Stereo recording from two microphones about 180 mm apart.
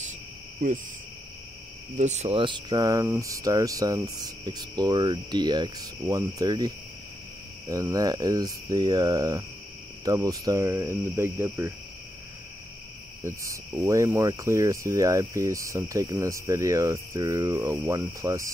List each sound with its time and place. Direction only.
2.0 s speech: 40° right (ahead or behind); by 9.4 s 20° right (ahead or behind)
10.0 s cricket: 20° right (ahead or behind)
13.2 s cricket: 15° right (ahead or behind)